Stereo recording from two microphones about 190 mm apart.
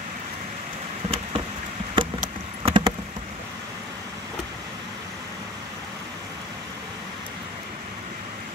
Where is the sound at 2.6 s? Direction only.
25° right (ahead or behind).